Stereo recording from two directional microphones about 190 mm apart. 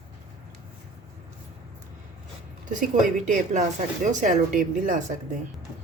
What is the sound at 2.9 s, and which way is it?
Speech, 40° right (ahead or behind).